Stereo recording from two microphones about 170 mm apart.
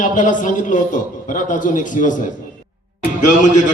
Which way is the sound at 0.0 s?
50° left (ahead or behind).